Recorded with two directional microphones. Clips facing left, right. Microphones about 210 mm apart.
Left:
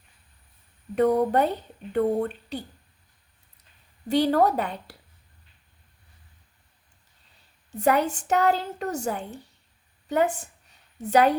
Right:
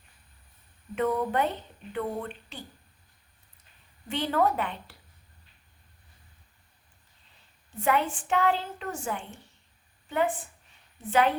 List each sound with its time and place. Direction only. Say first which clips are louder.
0.9 s a woman's voice: left 6 dB; 40° left (ahead or behind)
4.1 s a woman's voice: left 6 dB; 40° left (ahead or behind)
7.8 s a woman's voice: left 4 dB; 40° left (ahead or behind)
10.4 s a sound: left 1 dB; 45° left (ahead or behind)